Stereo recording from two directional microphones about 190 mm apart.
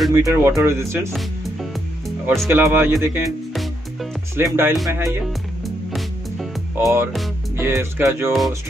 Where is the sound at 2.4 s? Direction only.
10° right (ahead or behind).